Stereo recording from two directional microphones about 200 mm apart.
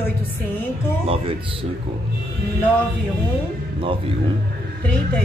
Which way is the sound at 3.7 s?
25° right (ahead or behind).